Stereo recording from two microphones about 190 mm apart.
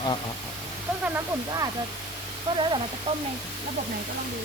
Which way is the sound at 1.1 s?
20° right (ahead or behind).